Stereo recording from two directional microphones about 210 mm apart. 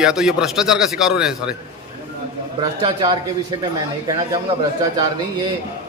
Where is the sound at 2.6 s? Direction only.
25° right (ahead or behind).